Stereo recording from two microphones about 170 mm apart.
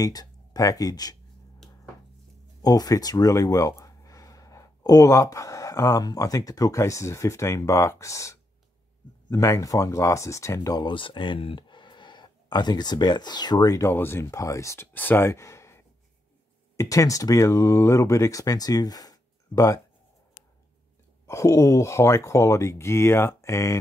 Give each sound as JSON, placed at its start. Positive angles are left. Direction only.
{"t": 0.0, "sound": "speech", "side_deg": 20}
{"t": 2.6, "sound": "speech", "side_deg": 20}
{"t": 21.3, "sound": "speech", "side_deg": 15}